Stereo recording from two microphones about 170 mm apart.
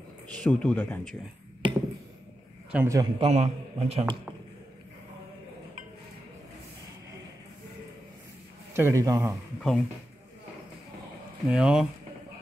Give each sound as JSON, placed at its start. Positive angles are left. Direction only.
{"t": 0.4, "sound": "speech", "side_deg": 5}
{"t": 1.6, "sound": "a sound", "side_deg": -30}
{"t": 2.7, "sound": "a man's voice", "side_deg": -15}
{"t": 3.2, "sound": "a man's voice", "side_deg": -40}
{"t": 8.7, "sound": "a man's voice", "side_deg": -15}
{"t": 9.6, "sound": "speech", "side_deg": 5}
{"t": 11.4, "sound": "speech", "side_deg": -5}